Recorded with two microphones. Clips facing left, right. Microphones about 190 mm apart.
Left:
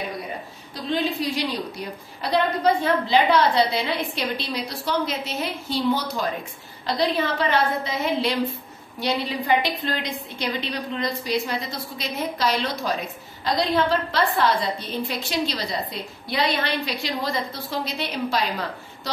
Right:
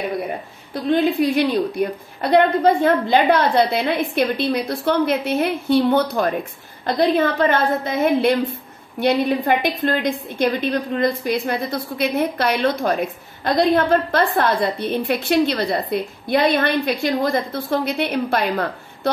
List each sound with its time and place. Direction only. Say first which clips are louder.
0.7 s a woman's voice: right 8 dB; 55° right (ahead or behind)